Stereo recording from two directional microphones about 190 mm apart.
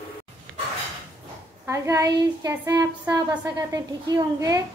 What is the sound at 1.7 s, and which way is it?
A woman's voice, 15° right (ahead or behind).